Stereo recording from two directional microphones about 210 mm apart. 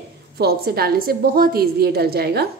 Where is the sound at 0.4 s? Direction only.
45° right (ahead or behind).